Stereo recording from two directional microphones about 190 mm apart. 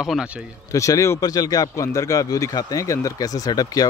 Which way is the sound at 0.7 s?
15° left (ahead or behind).